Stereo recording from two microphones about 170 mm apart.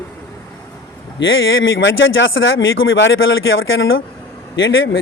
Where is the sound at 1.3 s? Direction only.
90° left.